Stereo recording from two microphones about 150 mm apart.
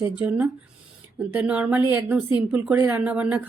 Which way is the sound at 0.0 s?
10° right (ahead or behind).